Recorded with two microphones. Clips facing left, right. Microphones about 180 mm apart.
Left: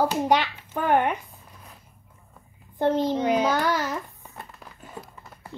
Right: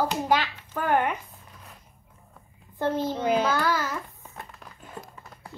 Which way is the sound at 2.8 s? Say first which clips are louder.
Left 4 dB; 20° left (ahead or behind).